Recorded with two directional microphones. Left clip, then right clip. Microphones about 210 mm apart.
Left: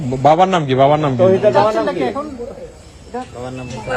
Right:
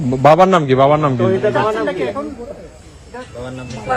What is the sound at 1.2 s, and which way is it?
Speech, 45° left (ahead or behind).